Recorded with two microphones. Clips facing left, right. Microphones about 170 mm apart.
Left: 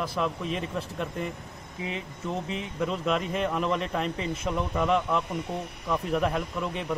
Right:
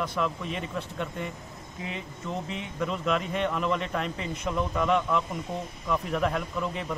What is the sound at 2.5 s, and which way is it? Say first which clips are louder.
A man's voice: left 1 dB; centre (ahead or behind).